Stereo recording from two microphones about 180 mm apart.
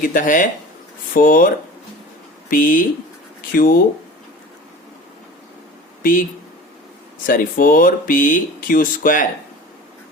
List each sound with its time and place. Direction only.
0.0 s speech: 50° left (ahead or behind)
2.5 s speech: 50° left (ahead or behind)
6.0 s speech: 50° left (ahead or behind)
7.3 s speech: 50° left (ahead or behind)